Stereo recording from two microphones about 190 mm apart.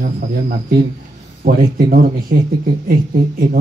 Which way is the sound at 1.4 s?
50° right (ahead or behind).